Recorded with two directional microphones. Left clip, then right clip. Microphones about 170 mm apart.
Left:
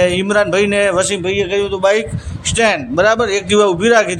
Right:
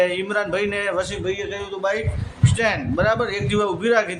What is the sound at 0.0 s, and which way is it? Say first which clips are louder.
A man's voice: left 7 dB; 45° left (ahead or behind).